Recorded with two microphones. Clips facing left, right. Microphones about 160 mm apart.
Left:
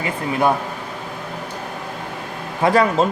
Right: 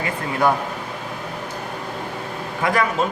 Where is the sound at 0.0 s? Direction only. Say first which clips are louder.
Left 1 dB; 20° left (ahead or behind).